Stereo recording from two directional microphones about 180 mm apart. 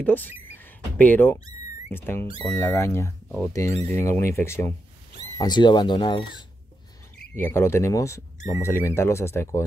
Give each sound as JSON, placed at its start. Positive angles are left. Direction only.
{"t": 0.0, "sound": "speech", "side_deg": 10}
{"t": 5.4, "sound": "speech", "side_deg": 25}
{"t": 7.3, "sound": "speech", "side_deg": 15}